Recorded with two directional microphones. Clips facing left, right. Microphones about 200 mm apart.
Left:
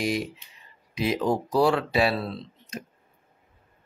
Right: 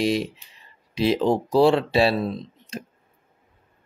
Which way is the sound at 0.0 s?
25° right (ahead or behind).